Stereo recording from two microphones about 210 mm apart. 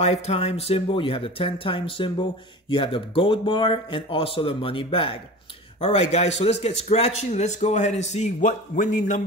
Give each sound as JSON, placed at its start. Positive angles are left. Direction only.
{"t": 0.0, "sound": "a man's voice", "side_deg": 30}